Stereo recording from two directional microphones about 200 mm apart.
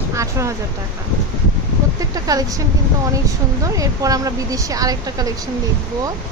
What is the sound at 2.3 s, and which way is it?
A woman's voice, 20° right (ahead or behind).